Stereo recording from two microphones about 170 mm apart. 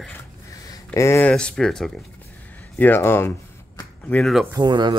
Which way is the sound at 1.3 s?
5° left (ahead or behind).